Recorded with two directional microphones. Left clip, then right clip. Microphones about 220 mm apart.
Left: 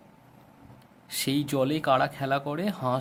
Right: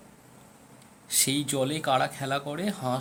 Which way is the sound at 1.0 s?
20° left (ahead or behind).